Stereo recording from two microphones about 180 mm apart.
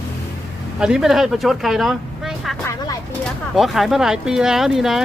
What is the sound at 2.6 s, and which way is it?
Speech, 20° left (ahead or behind).